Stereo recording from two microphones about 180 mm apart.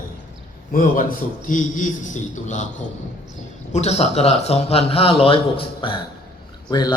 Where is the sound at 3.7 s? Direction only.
40° left (ahead or behind).